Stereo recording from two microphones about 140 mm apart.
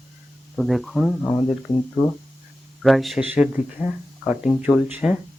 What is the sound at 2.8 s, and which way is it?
Speech, centre (ahead or behind).